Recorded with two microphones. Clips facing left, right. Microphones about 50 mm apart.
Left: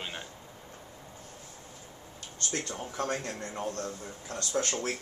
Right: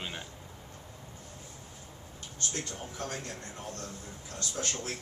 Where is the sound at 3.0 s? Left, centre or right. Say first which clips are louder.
Left 7 dB; left.